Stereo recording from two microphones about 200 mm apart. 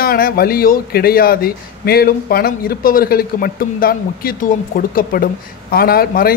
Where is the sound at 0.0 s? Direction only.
50° left (ahead or behind).